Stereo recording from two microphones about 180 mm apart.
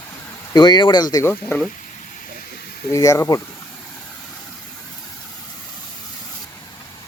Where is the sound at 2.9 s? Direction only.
15° left (ahead or behind).